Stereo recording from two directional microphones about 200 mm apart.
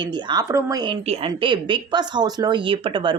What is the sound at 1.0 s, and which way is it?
Speech, 30° right (ahead or behind).